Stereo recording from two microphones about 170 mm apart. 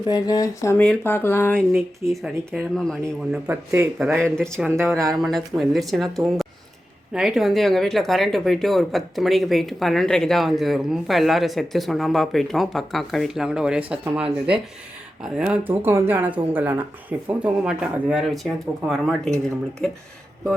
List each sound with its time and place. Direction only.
0.1 s a sound: 20° left (ahead or behind)
0.9 s speech: 15° left (ahead or behind); by 5.1 s 15° right (ahead or behind)
5.2 s speech: centre (ahead or behind)